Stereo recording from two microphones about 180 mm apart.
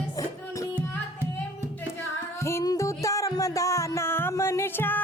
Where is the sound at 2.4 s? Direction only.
15° left (ahead or behind).